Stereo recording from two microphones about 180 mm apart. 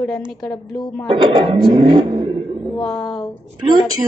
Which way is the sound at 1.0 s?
30° right (ahead or behind).